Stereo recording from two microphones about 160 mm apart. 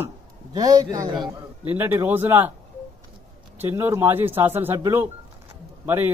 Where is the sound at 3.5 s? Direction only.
15° right (ahead or behind).